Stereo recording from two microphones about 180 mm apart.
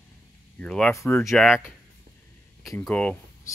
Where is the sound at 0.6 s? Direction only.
5° left (ahead or behind).